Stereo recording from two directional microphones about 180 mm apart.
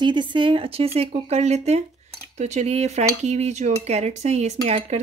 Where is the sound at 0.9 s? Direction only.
35° right (ahead or behind).